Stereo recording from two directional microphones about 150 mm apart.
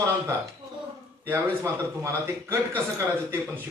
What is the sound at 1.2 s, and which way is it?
A man's voice, 20° right (ahead or behind).